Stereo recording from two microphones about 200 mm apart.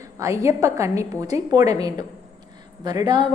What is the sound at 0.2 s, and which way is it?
A woman's voice, 15° right (ahead or behind).